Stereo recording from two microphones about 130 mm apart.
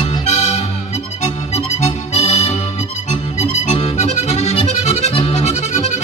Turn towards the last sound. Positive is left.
turn(degrees=60)  # may be behind; listen again after turning